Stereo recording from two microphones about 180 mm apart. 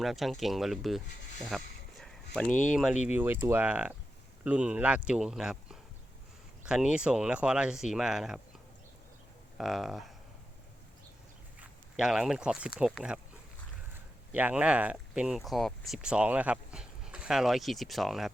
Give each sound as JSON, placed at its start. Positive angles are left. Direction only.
{"t": 0.0, "sound": "speech", "side_deg": 0}
{"t": 1.5, "sound": "a sound", "side_deg": 0}
{"t": 2.5, "sound": "speech", "side_deg": 45}
{"t": 2.7, "sound": "speech", "side_deg": -5}
{"t": 9.6, "sound": "speech", "side_deg": 0}
{"t": 11.6, "sound": "speech", "side_deg": -5}